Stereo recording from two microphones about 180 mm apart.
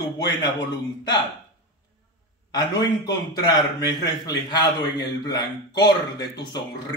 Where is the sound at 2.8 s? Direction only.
25° left (ahead or behind).